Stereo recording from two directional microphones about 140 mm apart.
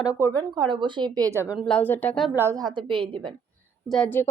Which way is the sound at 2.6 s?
35° right (ahead or behind).